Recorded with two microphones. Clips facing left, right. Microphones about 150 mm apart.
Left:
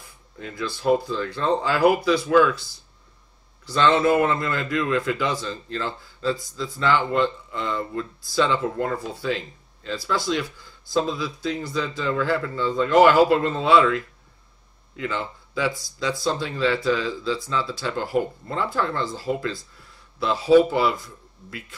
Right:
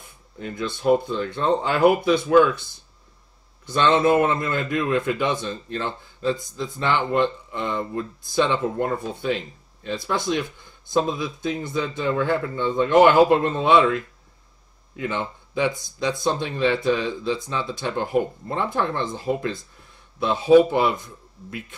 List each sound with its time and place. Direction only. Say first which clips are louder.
0.0 s a man's voice: right 3 dB; 20° right (ahead or behind)